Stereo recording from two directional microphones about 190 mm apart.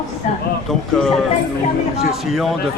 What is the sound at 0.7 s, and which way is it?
Speech, centre (ahead or behind).